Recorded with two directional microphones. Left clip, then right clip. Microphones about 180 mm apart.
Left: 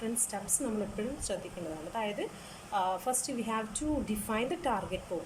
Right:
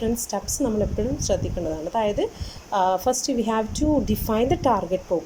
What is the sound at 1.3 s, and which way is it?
A woman's voice, 40° right (ahead or behind).